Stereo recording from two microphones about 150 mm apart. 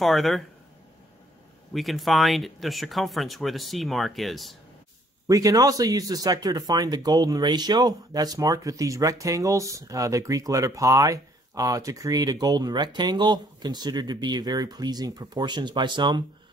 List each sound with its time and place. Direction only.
0.0 s speech: centre (ahead or behind)
1.7 s speech: centre (ahead or behind)
5.3 s speech: 25° right (ahead or behind)